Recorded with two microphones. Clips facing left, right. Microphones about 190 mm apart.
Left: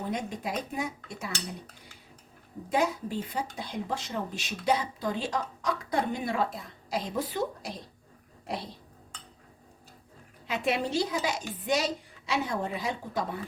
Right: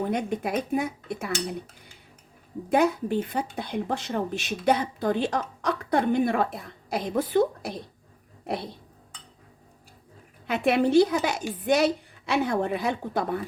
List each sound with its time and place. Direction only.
0.1 s speech: 60° right (ahead or behind)
2.6 s speech: 60° right (ahead or behind)
10.4 s speech: 60° right (ahead or behind)